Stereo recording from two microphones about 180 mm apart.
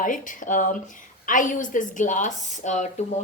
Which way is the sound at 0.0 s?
45° left (ahead or behind).